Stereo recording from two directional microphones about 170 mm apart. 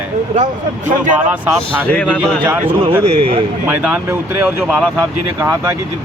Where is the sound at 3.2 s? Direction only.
35° right (ahead or behind).